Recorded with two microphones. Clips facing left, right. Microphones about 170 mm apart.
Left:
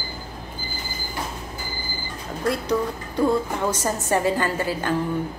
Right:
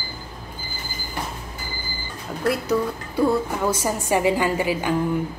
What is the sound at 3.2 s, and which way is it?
A woman's voice, 10° right (ahead or behind).